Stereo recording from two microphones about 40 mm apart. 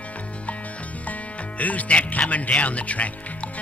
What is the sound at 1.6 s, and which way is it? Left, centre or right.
Speech, left.